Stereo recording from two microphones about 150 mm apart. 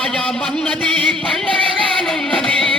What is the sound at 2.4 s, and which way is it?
Music, 5° left (ahead or behind).